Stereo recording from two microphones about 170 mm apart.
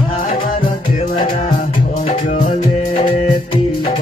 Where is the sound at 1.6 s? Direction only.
50° left (ahead or behind).